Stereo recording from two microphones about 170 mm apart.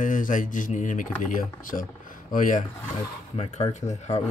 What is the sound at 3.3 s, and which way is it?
Speech, 40° left (ahead or behind).